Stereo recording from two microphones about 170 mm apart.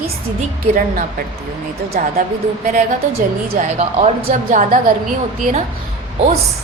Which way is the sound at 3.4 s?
60° right (ahead or behind).